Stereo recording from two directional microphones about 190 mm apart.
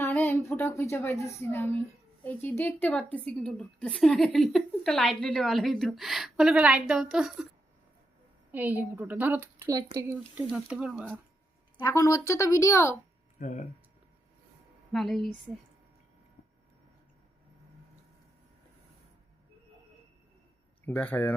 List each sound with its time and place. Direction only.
0.0 s a woman's voice: 10° left (ahead or behind)
8.5 s speech: 10° right (ahead or behind)
10.5 s a woman's voice: 5° right (ahead or behind)
11.8 s a woman's voice: 15° left (ahead or behind)
13.4 s speech: 40° left (ahead or behind)
14.9 s a woman's voice: centre (ahead or behind)
20.8 s a woman's voice: 10° left (ahead or behind)